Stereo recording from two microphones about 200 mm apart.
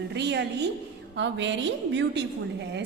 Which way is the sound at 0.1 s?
60° right (ahead or behind).